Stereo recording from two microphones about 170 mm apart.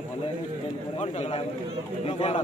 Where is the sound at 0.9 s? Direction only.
40° left (ahead or behind).